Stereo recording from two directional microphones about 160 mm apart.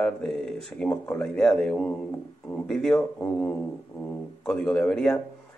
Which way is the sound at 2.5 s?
5° left (ahead or behind).